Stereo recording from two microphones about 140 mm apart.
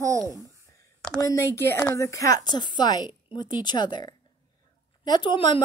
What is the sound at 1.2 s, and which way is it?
Speech, 20° left (ahead or behind).